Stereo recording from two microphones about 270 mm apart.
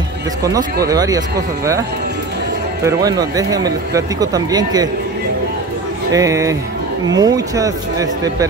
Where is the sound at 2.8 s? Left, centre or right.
Centre.